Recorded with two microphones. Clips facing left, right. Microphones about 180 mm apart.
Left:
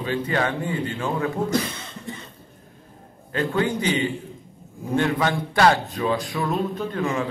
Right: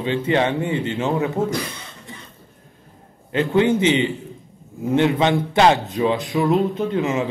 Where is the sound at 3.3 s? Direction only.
20° right (ahead or behind).